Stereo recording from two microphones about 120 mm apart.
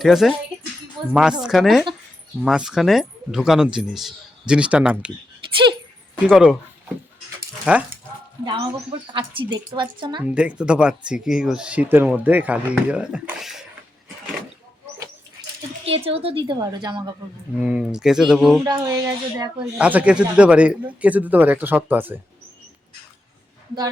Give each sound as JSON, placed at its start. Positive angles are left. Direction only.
{"t": 0.0, "sound": "speech", "side_deg": 0}
{"t": 6.2, "sound": "speech", "side_deg": -5}
{"t": 8.4, "sound": "speech", "side_deg": -45}
{"t": 10.2, "sound": "speech", "side_deg": -10}
{"t": 15.8, "sound": "speech", "side_deg": -50}
{"t": 17.6, "sound": "speech", "side_deg": -5}
{"t": 18.6, "sound": "speech", "side_deg": -25}
{"t": 19.8, "sound": "speech", "side_deg": -10}